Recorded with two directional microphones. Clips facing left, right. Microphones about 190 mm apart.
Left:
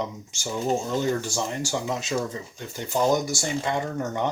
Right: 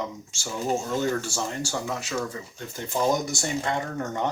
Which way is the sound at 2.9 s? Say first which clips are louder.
Left 2 dB; 10° left (ahead or behind).